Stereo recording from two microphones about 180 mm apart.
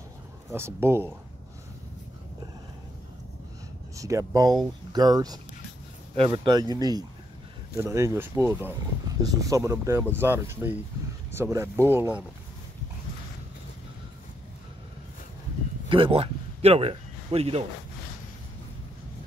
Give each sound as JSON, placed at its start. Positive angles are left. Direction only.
{"t": 0.5, "sound": "speech", "side_deg": -15}
{"t": 3.9, "sound": "speech", "side_deg": -20}
{"t": 15.9, "sound": "speech", "side_deg": -30}